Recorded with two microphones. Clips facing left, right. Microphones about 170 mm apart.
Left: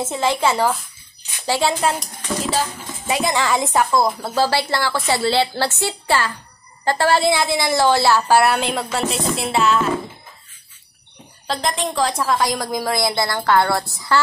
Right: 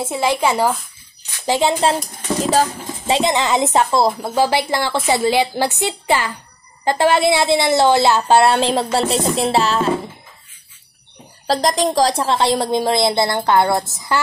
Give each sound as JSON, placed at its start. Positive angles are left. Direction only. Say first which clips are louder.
{"t": 0.0, "sound": "a woman's voice", "louder": "right 1 dB", "side_deg": -10}
{"t": 2.4, "sound": "music", "louder": "right 6 dB", "side_deg": -40}
{"t": 3.1, "sound": "a woman's voice", "louder": "right 3 dB", "side_deg": -20}
{"t": 9.3, "sound": "music", "louder": "right 2 dB", "side_deg": -35}
{"t": 11.4, "sound": "a woman's voice", "louder": "right 6 dB", "side_deg": -35}